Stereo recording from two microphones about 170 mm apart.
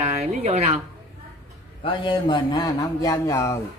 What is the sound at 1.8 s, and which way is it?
A man's voice, 30° left (ahead or behind).